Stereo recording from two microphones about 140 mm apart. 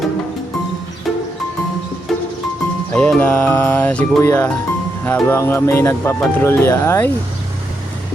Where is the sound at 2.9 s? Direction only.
5° left (ahead or behind).